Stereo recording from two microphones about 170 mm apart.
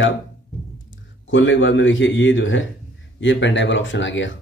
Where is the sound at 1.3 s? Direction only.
90° left.